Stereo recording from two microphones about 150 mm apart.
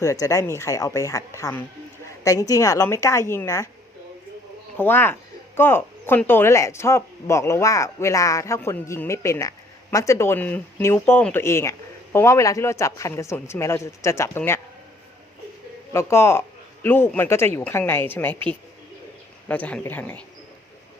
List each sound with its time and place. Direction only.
0.0 s a man's voice: 20° left (ahead or behind)
4.8 s a man's voice: 15° left (ahead or behind)
15.9 s speech: 15° left (ahead or behind)